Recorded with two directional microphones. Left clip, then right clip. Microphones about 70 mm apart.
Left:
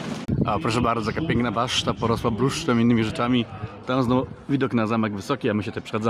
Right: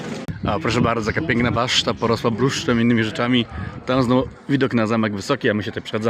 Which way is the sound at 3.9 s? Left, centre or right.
Right.